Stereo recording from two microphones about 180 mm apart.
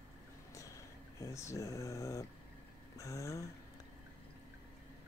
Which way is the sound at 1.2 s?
15° left (ahead or behind).